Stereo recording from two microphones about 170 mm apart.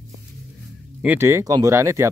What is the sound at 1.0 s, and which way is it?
Speech, 15° right (ahead or behind).